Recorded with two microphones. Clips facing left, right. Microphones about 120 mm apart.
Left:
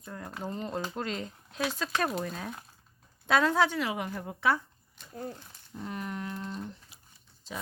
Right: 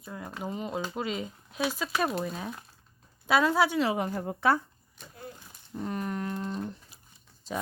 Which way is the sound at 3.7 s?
35° right (ahead or behind).